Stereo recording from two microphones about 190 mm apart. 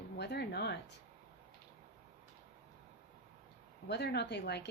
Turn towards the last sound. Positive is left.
turn(degrees=65)  # may be behind; listen again after turning